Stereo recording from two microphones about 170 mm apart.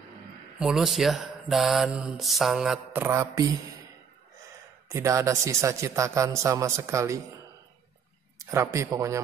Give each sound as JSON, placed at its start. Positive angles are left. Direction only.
{"t": 0.6, "sound": "speech", "side_deg": -5}
{"t": 4.8, "sound": "a man's voice", "side_deg": -20}
{"t": 8.4, "sound": "a sound", "side_deg": -15}
{"t": 8.7, "sound": "a man's voice", "side_deg": -20}